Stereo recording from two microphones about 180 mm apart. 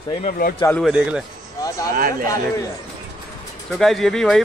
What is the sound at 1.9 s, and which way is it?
Speech, 50° right (ahead or behind).